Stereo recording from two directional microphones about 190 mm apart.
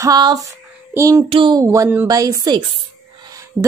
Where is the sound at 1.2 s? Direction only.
25° right (ahead or behind).